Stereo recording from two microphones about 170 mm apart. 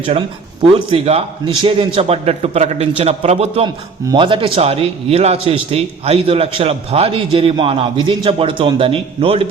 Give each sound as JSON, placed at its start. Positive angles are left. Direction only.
{"t": 0.9, "sound": "a man's voice", "side_deg": -35}